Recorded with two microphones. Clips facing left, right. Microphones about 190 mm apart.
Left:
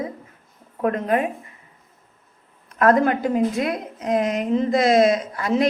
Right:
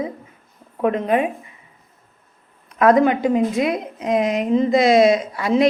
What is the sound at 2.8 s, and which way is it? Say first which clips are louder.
A woman's voice: right 3 dB; 15° right (ahead or behind).